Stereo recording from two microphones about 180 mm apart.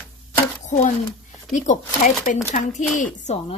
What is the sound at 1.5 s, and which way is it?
Speech, 40° left (ahead or behind).